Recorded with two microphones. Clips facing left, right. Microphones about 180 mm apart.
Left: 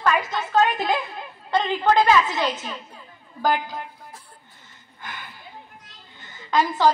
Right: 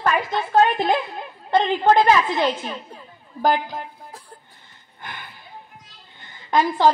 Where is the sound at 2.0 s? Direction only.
50° right (ahead or behind).